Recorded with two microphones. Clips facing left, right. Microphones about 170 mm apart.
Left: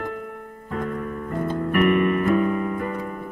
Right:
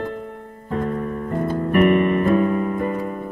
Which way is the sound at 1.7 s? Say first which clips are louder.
Right 3 dB; 30° right (ahead or behind).